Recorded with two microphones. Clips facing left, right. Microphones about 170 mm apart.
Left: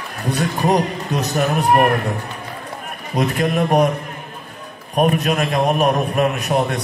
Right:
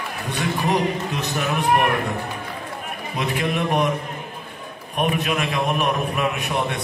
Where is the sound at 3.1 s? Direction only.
45° left (ahead or behind).